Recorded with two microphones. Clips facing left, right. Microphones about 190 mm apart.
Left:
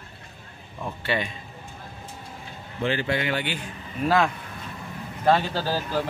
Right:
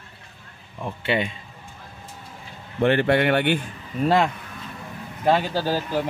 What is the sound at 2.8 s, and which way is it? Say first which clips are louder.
Speech: right 7 dB; 60° right (ahead or behind).